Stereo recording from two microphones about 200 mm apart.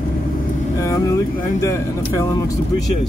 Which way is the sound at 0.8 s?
15° left (ahead or behind).